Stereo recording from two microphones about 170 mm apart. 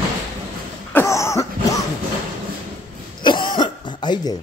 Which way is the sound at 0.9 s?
15° left (ahead or behind).